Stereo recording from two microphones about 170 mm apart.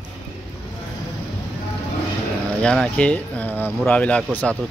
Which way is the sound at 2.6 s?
5° left (ahead or behind).